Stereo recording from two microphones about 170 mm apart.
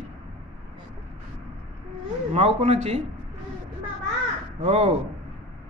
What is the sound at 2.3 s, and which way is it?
Speech, 35° right (ahead or behind).